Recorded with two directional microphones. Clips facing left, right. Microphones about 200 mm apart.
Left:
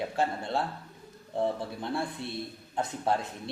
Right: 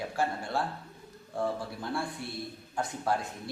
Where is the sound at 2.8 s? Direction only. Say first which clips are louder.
Left 2 dB; 20° left (ahead or behind).